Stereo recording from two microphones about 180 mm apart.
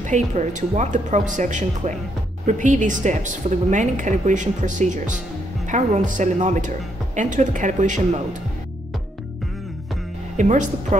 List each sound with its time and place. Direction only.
0.0 s a woman's voice: 40° right (ahead or behind)
10.3 s speech: 40° right (ahead or behind)